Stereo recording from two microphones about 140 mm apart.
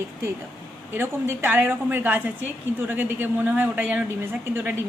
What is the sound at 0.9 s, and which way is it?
A woman's voice, 15° right (ahead or behind).